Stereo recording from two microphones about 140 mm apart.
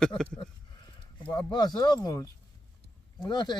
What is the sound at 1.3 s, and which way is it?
Speech, 30° left (ahead or behind).